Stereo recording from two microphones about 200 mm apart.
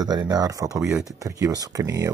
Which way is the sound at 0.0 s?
20° right (ahead or behind).